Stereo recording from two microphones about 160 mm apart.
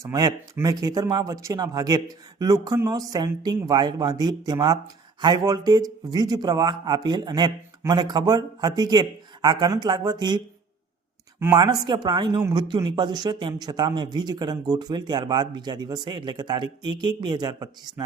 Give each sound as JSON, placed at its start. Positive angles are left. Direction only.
{"t": 0.0, "sound": "speech", "side_deg": -20}
{"t": 11.5, "sound": "speech", "side_deg": -25}
{"t": 12.4, "sound": "a man's voice", "side_deg": -15}
{"t": 12.6, "sound": "speech", "side_deg": -30}